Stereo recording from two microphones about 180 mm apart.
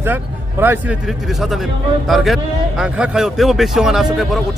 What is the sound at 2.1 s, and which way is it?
A man's voice, centre (ahead or behind).